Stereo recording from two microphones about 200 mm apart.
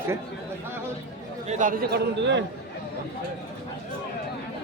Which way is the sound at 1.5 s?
40° right (ahead or behind).